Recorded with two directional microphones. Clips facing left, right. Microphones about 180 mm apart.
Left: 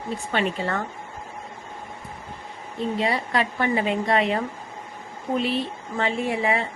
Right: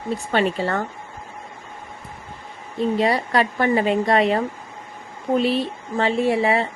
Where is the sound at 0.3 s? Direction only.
40° right (ahead or behind).